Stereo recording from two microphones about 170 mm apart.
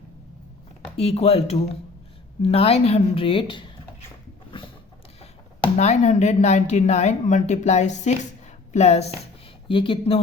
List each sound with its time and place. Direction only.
0.9 s a woman's voice: 35° left (ahead or behind)
5.7 s a woman's voice: 40° left (ahead or behind)